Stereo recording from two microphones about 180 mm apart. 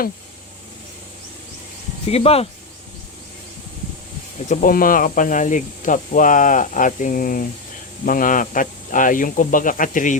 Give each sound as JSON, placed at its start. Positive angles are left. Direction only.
{"t": 2.0, "sound": "speech", "side_deg": 35}
{"t": 4.4, "sound": "speech", "side_deg": 45}